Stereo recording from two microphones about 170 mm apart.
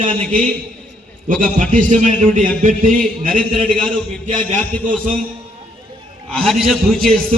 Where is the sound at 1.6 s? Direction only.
50° right (ahead or behind).